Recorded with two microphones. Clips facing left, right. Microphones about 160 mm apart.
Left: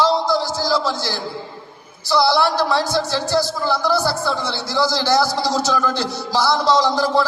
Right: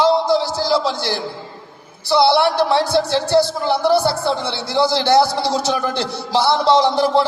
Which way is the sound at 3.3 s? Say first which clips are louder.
Right 4 dB; 25° right (ahead or behind).